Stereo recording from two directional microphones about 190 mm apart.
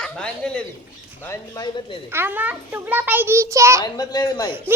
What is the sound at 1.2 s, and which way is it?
Speech, 15° left (ahead or behind).